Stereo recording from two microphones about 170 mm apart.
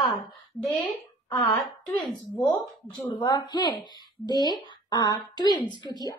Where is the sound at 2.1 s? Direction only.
25° left (ahead or behind).